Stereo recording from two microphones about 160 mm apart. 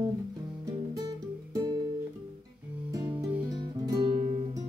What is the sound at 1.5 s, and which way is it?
Guitar, 25° right (ahead or behind).